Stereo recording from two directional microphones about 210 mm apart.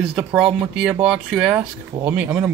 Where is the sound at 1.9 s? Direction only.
20° right (ahead or behind).